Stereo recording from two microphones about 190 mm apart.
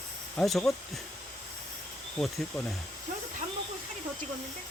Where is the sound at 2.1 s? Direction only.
5° left (ahead or behind).